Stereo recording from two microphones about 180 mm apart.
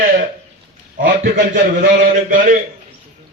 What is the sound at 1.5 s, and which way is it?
A man's voice, 50° right (ahead or behind).